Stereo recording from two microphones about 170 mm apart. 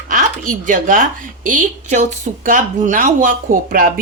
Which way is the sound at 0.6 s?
50° right (ahead or behind).